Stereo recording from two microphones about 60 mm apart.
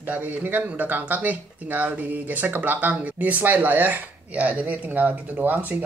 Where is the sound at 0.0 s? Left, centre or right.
Right.